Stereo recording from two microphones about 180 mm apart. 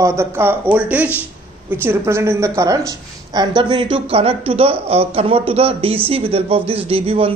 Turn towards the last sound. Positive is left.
turn(degrees=-30)  # may be behind; listen again after turning